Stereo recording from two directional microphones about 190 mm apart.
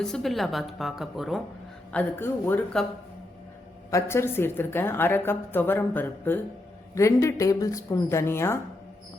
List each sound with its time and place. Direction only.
0.0 s a woman's voice: centre (ahead or behind)
1.9 s a woman's voice: 10° left (ahead or behind)
3.9 s a woman's voice: 15° left (ahead or behind)